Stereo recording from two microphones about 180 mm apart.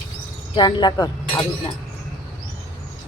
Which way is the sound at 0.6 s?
25° left (ahead or behind).